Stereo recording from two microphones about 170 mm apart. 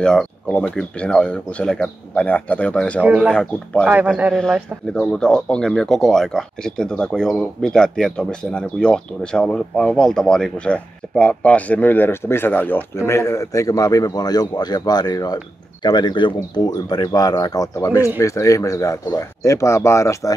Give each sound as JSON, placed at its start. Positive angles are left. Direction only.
{"t": 0.0, "sound": "speech", "side_deg": 5}
{"t": 3.0, "sound": "a man's voice", "side_deg": -10}
{"t": 3.3, "sound": "speech", "side_deg": 5}
{"t": 3.8, "sound": "a man's voice", "side_deg": -10}
{"t": 4.3, "sound": "speech", "side_deg": 5}